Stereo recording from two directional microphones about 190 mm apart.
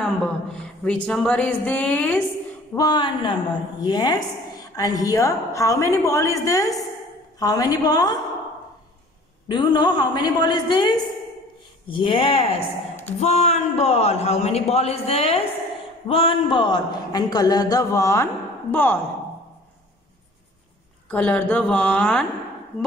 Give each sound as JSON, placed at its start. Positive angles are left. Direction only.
{"t": 0.0, "sound": "speech", "side_deg": 5}
{"t": 2.7, "sound": "a man's voice", "side_deg": 20}
{"t": 9.5, "sound": "a man's voice", "side_deg": 25}
{"t": 11.9, "sound": "a man's voice", "side_deg": 30}
{"t": 21.1, "sound": "speech", "side_deg": 5}